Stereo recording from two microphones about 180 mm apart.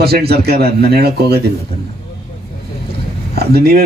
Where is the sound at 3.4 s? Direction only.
60° right (ahead or behind).